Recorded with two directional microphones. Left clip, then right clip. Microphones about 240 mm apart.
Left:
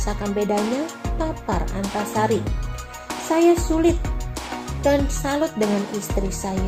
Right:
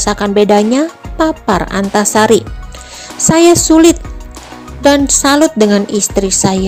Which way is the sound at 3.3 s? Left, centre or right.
Right.